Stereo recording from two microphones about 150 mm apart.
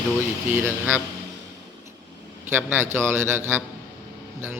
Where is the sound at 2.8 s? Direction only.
15° right (ahead or behind).